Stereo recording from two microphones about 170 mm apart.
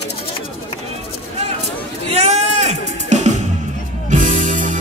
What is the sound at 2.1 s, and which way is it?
Music, 40° right (ahead or behind).